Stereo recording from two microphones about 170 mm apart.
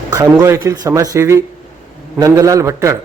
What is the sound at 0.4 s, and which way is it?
A man's voice, 15° right (ahead or behind).